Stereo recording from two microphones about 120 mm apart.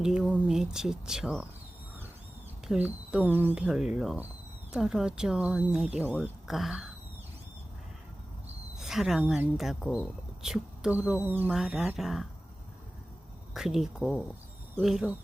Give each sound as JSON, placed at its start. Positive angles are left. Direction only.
{"t": 0.0, "sound": "speech", "side_deg": -5}
{"t": 2.6, "sound": "speech", "side_deg": -10}
{"t": 3.6, "sound": "speech", "side_deg": -5}
{"t": 8.8, "sound": "speech", "side_deg": 0}
{"t": 11.5, "sound": "speech", "side_deg": -5}
{"t": 13.5, "sound": "speech", "side_deg": -5}